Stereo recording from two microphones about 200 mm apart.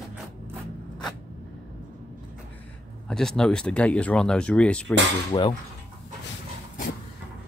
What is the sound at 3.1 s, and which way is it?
Speech, 5° left (ahead or behind).